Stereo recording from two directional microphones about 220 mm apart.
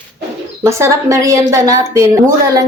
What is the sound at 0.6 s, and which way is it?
A woman's voice, 15° right (ahead or behind).